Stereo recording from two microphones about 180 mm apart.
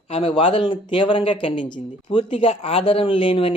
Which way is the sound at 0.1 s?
30° left (ahead or behind).